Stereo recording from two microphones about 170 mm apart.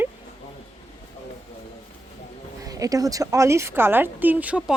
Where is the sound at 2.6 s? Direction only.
20° right (ahead or behind).